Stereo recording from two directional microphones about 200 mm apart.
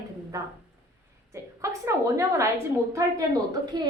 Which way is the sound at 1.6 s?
15° right (ahead or behind).